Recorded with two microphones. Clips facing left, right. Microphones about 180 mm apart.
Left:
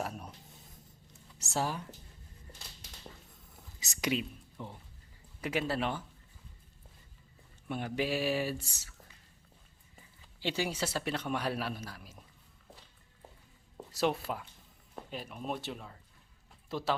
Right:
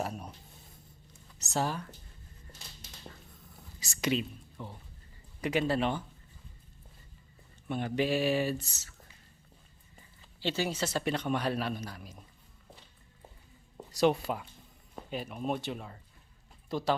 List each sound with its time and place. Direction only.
0.0 s a sound: centre (ahead or behind)
1.4 s speech: 10° left (ahead or behind)
3.8 s whispering: 20° left (ahead or behind)
4.1 s speech: 10° left (ahead or behind)
7.7 s speech: 5° left (ahead or behind)
13.7 s speech: centre (ahead or behind)